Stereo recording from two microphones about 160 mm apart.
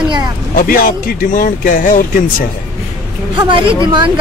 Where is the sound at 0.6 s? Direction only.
60° left (ahead or behind).